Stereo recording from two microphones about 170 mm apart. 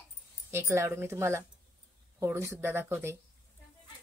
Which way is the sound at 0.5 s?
15° right (ahead or behind).